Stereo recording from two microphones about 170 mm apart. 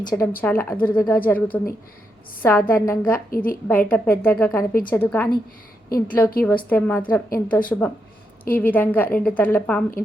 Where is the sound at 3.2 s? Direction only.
55° left (ahead or behind).